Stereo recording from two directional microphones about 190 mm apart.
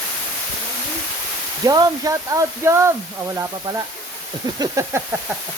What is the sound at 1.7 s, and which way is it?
Speech, 20° right (ahead or behind).